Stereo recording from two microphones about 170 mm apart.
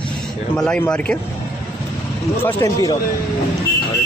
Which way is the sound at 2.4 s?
20° left (ahead or behind).